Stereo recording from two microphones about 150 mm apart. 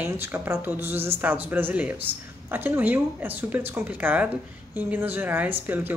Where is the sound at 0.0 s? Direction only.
15° right (ahead or behind).